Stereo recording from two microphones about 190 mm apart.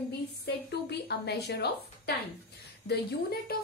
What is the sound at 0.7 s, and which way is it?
A woman's voice, 60° left (ahead or behind).